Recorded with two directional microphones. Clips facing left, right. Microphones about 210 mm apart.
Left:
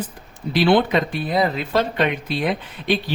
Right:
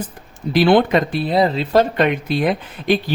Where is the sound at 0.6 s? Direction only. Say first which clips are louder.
Right 3 dB; 45° right (ahead or behind).